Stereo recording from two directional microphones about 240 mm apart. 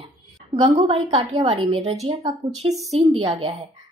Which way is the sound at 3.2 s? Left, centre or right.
Right.